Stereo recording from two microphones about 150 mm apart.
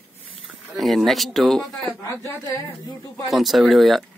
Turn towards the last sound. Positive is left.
turn(degrees=0)  # may be behind; listen again after turning